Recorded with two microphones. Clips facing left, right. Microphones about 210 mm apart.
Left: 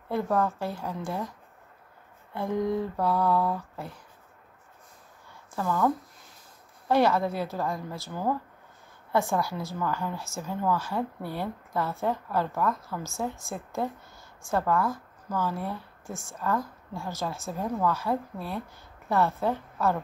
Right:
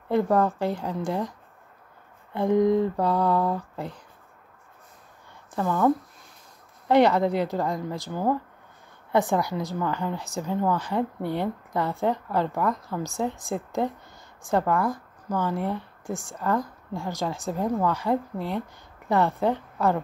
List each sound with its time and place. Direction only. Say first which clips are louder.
0.1 s a woman's voice: right 5 dB; 15° right (ahead or behind)
3.0 s a woman's voice: right 2 dB; 15° right (ahead or behind)
5.6 s speech: right 3 dB; 20° right (ahead or behind)
6.9 s a woman's voice: right 4 dB; 20° right (ahead or behind)